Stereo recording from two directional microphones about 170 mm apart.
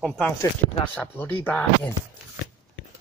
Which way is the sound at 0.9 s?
10° left (ahead or behind).